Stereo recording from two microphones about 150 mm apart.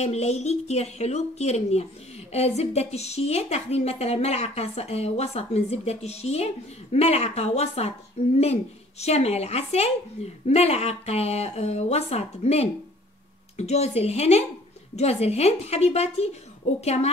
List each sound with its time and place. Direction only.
0.0 s a woman's voice: 45° left (ahead or behind)
9.0 s a woman's voice: 45° left (ahead or behind)